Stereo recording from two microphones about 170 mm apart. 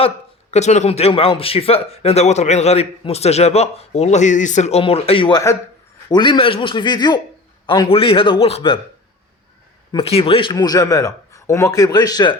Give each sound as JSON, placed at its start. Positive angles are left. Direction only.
{"t": 0.5, "sound": "a man's voice", "side_deg": 40}
{"t": 9.9, "sound": "a man's voice", "side_deg": 35}